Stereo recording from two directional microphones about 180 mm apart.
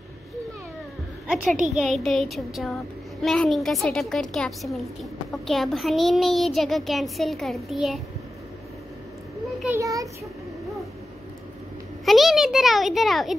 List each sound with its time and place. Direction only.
1.7 s a child's voice: centre (ahead or behind)
9.8 s a child's voice: 20° right (ahead or behind)
12.0 s a child's voice: centre (ahead or behind)